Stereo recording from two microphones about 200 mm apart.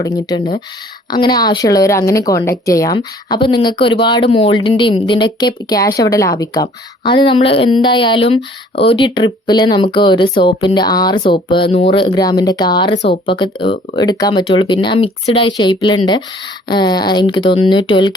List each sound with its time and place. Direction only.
0.0 s speech: 20° left (ahead or behind)